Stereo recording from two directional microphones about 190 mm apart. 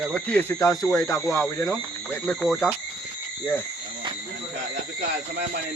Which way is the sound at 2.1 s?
Centre (ahead or behind).